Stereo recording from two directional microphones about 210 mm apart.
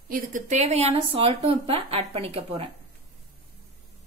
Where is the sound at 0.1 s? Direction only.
35° right (ahead or behind).